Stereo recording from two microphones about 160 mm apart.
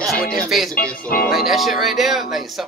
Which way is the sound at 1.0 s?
65° left (ahead or behind).